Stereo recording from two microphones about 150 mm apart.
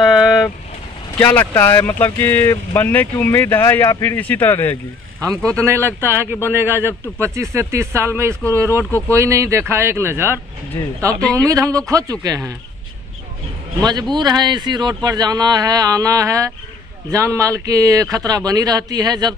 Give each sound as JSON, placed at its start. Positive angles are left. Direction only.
{"t": 0.0, "sound": "vehicle", "side_deg": -5}
{"t": 1.1, "sound": "speech", "side_deg": 10}
{"t": 5.5, "sound": "speech", "side_deg": -20}
{"t": 13.7, "sound": "speech", "side_deg": -25}